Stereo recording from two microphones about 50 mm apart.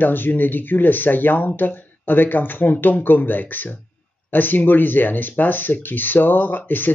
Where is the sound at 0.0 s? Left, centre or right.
Left.